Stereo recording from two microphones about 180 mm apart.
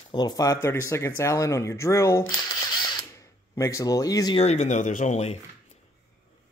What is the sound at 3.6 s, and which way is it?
Speech, 15° left (ahead or behind).